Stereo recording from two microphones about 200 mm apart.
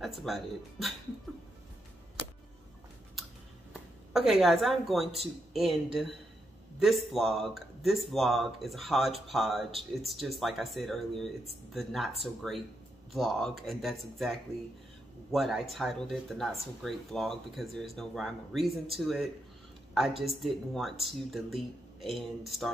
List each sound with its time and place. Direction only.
0.0 s speech: centre (ahead or behind)
4.1 s speech: centre (ahead or behind)